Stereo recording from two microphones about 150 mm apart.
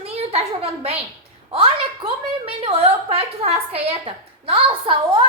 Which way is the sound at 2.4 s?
40° right (ahead or behind).